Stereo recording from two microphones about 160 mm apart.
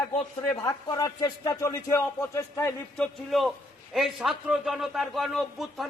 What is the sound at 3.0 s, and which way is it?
A man's voice, centre (ahead or behind).